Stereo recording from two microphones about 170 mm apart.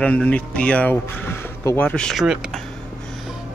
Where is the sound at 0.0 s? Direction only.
10° left (ahead or behind).